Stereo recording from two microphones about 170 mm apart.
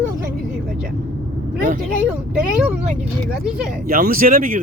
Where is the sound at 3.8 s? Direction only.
55° right (ahead or behind).